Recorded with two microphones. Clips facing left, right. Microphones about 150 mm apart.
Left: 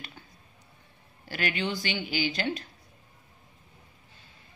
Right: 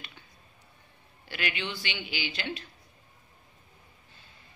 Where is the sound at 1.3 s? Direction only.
45° left (ahead or behind).